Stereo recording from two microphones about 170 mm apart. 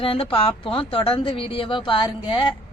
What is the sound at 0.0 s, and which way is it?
Speech, 30° left (ahead or behind).